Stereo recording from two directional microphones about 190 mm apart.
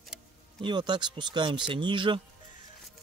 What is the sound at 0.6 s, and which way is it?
Speech, 25° right (ahead or behind).